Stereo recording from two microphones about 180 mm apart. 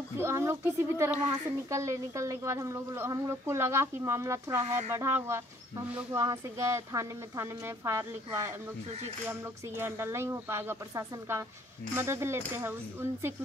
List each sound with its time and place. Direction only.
0.2 s speech: 15° right (ahead or behind)